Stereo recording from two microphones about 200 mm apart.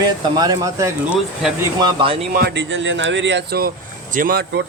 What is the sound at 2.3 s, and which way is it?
Speech, 55° right (ahead or behind).